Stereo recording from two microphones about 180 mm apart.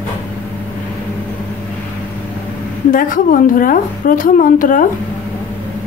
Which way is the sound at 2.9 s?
50° left (ahead or behind).